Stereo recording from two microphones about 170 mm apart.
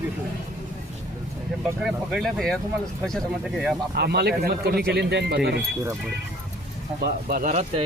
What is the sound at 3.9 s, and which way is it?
Speech, 70° right (ahead or behind).